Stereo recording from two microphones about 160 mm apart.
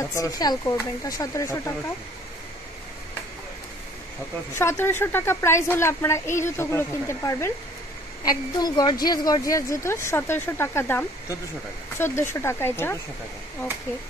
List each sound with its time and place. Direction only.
0.0 s speech: 20° left (ahead or behind)
4.6 s a woman's voice: 15° left (ahead or behind)